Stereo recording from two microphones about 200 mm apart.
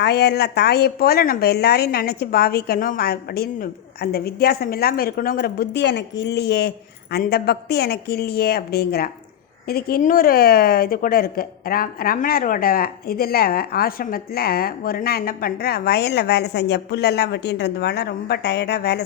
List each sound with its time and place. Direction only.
0.0 s speech: 55° left (ahead or behind)